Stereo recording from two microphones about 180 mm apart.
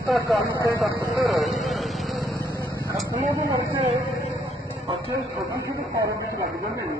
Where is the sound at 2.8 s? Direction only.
20° right (ahead or behind).